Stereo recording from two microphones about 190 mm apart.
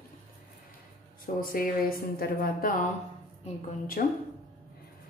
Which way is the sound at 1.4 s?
50° left (ahead or behind).